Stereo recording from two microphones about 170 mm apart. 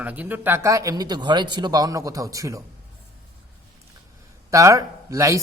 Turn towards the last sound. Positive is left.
turn(degrees=-20)  # may be behind; listen again after turning